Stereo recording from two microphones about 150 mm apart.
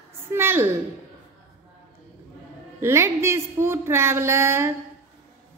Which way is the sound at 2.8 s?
15° right (ahead or behind).